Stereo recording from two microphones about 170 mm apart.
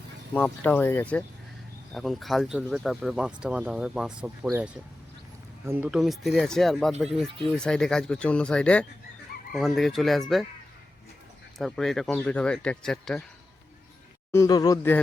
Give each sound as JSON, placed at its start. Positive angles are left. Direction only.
{"t": 0.3, "sound": "speech", "side_deg": 10}
{"t": 5.9, "sound": "speech", "side_deg": 0}
{"t": 11.5, "sound": "speech", "side_deg": 0}
{"t": 14.3, "sound": "speech", "side_deg": 20}